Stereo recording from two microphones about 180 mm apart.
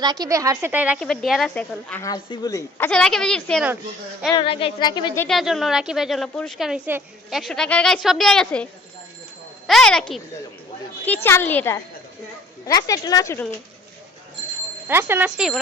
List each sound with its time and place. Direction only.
0.0 s a woman's voice: 20° right (ahead or behind)
0.9 s a woman's voice: 5° left (ahead or behind)
2.0 s speech: 25° left (ahead or behind); by 3.7 s 5° left (ahead or behind)
4.4 s a woman's voice: 30° left (ahead or behind)
5.2 s a woman's voice: centre (ahead or behind)
9.6 s a woman's voice: 5° left (ahead or behind); by 13.4 s 20° left (ahead or behind)
14.8 s a woman's voice: 10° right (ahead or behind)